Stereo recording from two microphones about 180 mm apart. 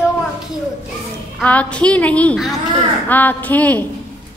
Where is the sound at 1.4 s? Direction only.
5° left (ahead or behind).